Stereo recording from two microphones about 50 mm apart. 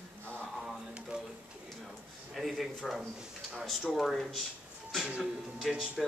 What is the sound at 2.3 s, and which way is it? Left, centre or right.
Speech, centre.